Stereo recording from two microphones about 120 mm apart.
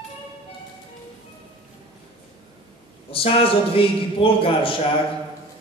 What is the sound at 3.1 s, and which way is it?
A man's voice, 50° left (ahead or behind).